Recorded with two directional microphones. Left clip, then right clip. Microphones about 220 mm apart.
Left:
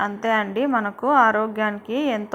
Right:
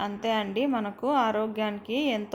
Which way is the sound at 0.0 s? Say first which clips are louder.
Left 7 dB; 15° left (ahead or behind).